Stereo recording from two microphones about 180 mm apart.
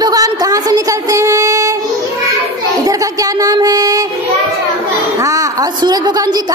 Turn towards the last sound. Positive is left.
turn(degrees=-20)  # may be behind; listen again after turning